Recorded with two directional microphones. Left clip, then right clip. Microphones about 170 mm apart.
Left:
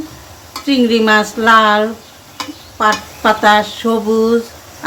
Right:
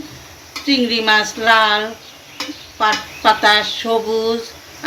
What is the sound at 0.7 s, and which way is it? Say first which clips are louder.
Speech: left 3 dB; 60° left (ahead or behind).